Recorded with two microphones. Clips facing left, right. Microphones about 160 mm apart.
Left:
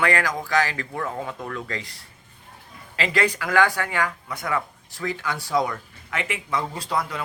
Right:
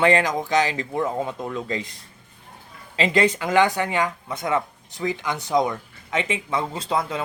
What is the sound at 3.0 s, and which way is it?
Speech, 25° right (ahead or behind).